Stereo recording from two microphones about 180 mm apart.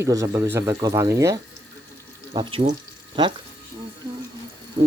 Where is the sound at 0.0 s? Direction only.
15° right (ahead or behind).